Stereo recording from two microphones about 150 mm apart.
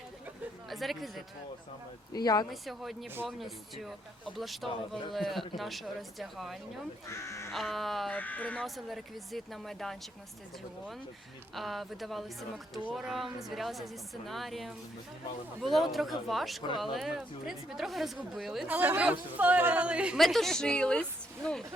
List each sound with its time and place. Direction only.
0.7 s speech: centre (ahead or behind)
2.1 s speech: 25° left (ahead or behind)
2.5 s speech: centre (ahead or behind)
7.1 s speech: 20° left (ahead or behind)
7.5 s speech: centre (ahead or behind)
11.5 s speech: centre (ahead or behind)